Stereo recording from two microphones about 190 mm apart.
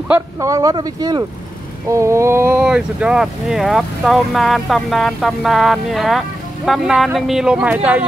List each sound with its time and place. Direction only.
0.1 s speech: 15° right (ahead or behind)